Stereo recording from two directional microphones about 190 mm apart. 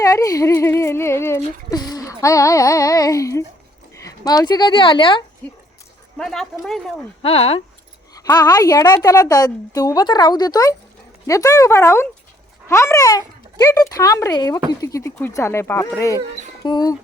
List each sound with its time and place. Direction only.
0.0 s speech: 15° left (ahead or behind)
5.4 s speech: 10° left (ahead or behind)
7.2 s speech: 30° left (ahead or behind)
8.1 s a woman's voice: 20° left (ahead or behind)